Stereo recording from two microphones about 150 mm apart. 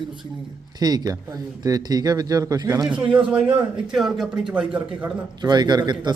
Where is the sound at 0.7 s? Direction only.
25° right (ahead or behind).